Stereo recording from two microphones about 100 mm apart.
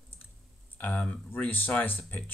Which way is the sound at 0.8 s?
15° left (ahead or behind).